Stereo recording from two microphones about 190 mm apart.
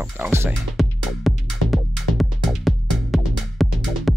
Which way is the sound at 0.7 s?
Centre (ahead or behind).